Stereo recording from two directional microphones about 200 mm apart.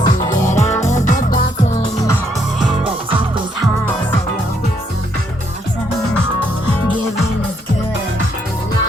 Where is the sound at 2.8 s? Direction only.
25° right (ahead or behind).